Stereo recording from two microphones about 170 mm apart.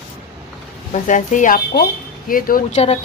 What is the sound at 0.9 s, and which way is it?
A woman's voice, 45° left (ahead or behind).